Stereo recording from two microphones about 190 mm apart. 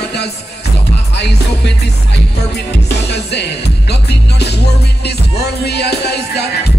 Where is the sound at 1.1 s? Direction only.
60° left (ahead or behind).